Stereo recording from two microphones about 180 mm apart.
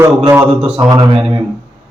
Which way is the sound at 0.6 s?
30° right (ahead or behind).